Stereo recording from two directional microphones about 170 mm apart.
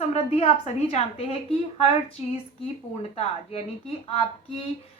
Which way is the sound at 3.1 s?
35° left (ahead or behind).